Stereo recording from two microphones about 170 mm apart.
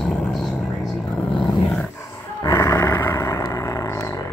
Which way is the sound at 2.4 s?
15° left (ahead or behind).